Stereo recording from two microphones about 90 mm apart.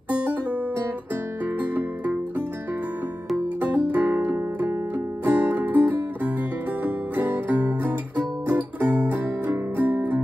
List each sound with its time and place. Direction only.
1.4 s music: 15° right (ahead or behind)
3.6 s music: 15° right (ahead or behind)